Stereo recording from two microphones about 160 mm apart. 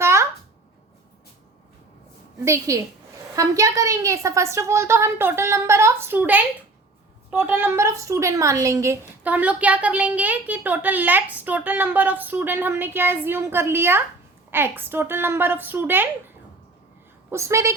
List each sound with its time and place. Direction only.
0.0 s a sound: 15° right (ahead or behind)
2.4 s a woman's voice: 20° right (ahead or behind)
17.3 s a woman's voice: 20° right (ahead or behind)